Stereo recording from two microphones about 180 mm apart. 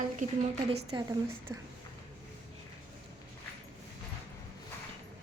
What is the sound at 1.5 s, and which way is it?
Speech, 20° right (ahead or behind).